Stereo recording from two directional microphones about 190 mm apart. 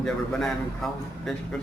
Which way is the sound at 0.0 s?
Centre (ahead or behind).